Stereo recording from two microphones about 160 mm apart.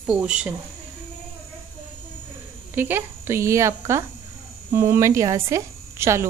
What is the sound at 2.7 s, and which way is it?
Speech, 15° right (ahead or behind).